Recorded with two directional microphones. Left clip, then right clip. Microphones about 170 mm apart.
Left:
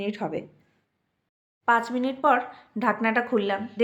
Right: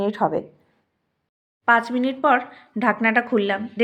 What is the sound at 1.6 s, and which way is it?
Speech, 15° right (ahead or behind).